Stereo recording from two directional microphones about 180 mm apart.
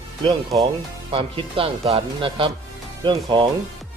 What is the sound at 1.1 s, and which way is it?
Speech, 30° right (ahead or behind).